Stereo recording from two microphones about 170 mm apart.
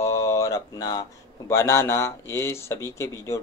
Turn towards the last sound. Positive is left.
turn(degrees=15)  # may be behind; listen again after turning